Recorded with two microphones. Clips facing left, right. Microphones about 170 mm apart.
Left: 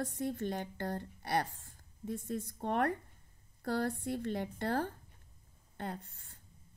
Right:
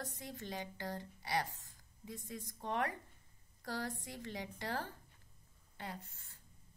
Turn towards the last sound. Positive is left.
turn(degrees=60)  # may be behind; listen again after turning